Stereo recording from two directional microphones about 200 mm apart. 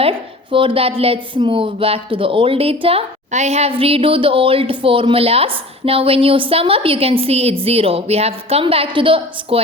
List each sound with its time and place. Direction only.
0.0 s a woman's voice: 25° right (ahead or behind)